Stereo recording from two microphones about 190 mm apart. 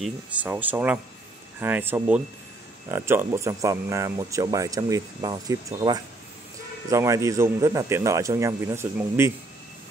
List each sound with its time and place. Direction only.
0.0 s a man's voice: 10° right (ahead or behind)